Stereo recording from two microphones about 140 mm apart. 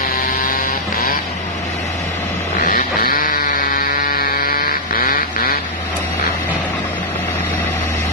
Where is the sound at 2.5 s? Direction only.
70° left (ahead or behind).